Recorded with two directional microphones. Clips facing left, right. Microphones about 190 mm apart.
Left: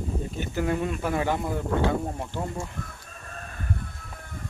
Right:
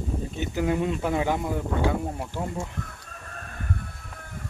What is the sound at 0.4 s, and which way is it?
Speech, 15° right (ahead or behind).